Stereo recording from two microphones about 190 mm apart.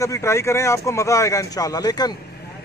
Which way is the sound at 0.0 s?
15° left (ahead or behind).